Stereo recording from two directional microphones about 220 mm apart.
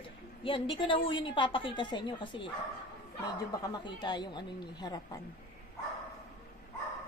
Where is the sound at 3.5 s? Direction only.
20° left (ahead or behind).